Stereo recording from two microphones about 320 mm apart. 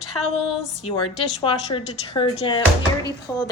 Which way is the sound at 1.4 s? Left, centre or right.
Centre.